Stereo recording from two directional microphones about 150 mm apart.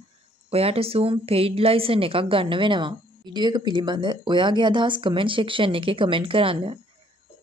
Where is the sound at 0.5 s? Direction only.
40° right (ahead or behind).